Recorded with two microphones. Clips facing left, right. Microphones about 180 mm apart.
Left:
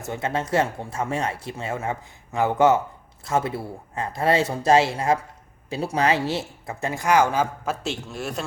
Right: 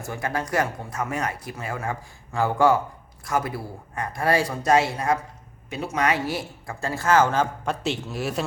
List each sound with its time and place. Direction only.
0.0 s speech: 25° left (ahead or behind); by 8.4 s centre (ahead or behind)